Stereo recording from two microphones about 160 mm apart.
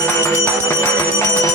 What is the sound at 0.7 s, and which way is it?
Music, 20° left (ahead or behind).